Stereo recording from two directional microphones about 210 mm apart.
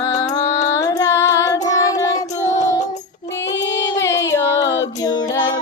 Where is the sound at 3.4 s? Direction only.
60° left (ahead or behind).